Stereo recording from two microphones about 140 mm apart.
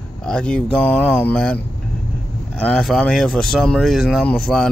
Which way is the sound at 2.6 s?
5° left (ahead or behind).